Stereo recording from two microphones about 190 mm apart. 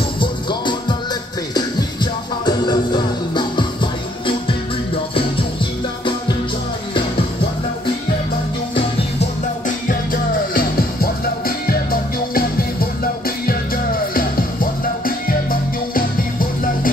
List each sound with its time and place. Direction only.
0.2 s music: 25° left (ahead or behind)
10.5 s music: 50° left (ahead or behind)
14.1 s music: 50° left (ahead or behind)